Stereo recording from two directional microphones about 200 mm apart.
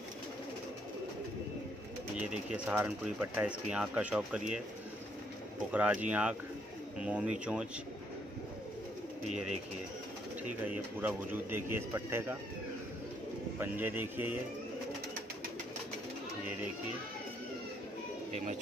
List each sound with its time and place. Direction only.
2.1 s speech: 5° right (ahead or behind)
5.7 s speech: 5° right (ahead or behind)
10.7 s speech: 10° right (ahead or behind)
13.6 s speech: 10° right (ahead or behind)
18.3 s speech: 35° right (ahead or behind)